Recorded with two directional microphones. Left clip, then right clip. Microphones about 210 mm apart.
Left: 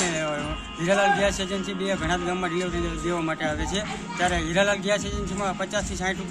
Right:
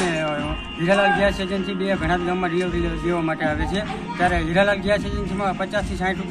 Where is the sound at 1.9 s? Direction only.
10° left (ahead or behind).